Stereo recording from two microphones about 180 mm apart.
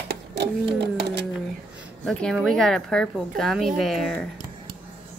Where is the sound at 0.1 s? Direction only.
70° right (ahead or behind).